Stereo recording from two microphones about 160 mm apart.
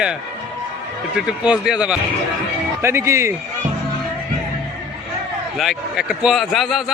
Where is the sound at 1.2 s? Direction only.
5° right (ahead or behind).